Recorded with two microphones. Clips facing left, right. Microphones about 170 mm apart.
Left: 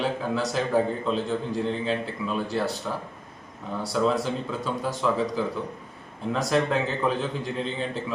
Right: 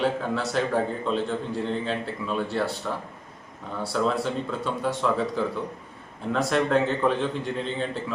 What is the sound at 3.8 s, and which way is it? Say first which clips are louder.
A man's voice: left 1 dB; centre (ahead or behind).